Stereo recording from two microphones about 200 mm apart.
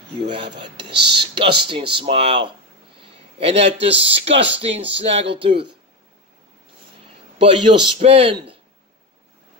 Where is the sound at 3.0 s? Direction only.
30° right (ahead or behind).